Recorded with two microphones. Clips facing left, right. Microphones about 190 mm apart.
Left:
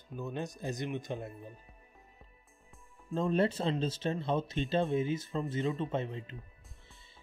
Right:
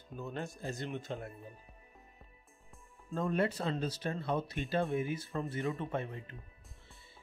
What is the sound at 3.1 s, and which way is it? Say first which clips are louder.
Speech: left 3 dB; 25° left (ahead or behind).